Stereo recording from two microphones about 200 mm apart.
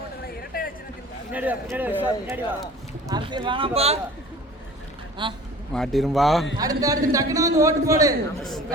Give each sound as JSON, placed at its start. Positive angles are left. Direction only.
{"t": 0.5, "sound": "a sound", "side_deg": 45}
{"t": 1.3, "sound": "a man's voice", "side_deg": -5}
{"t": 3.1, "sound": "speech", "side_deg": -25}
{"t": 5.2, "sound": "speech", "side_deg": -25}
{"t": 5.7, "sound": "speech", "side_deg": 0}
{"t": 6.6, "sound": "a man's voice", "side_deg": -15}